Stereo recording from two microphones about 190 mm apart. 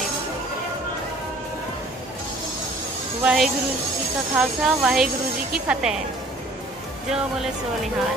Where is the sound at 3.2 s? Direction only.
5° right (ahead or behind).